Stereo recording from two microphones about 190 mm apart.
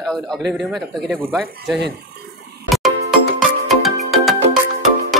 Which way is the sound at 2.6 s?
Centre (ahead or behind).